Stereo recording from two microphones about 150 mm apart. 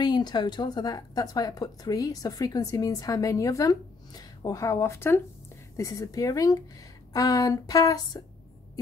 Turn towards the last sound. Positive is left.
turn(degrees=20)  # may be behind; listen again after turning